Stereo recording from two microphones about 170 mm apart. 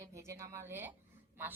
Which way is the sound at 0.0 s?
15° right (ahead or behind).